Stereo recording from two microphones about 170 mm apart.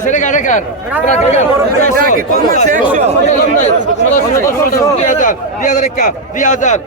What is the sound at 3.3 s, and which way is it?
Speech, 45° left (ahead or behind).